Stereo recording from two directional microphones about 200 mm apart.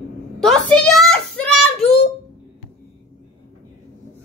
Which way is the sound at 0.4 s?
Centre (ahead or behind).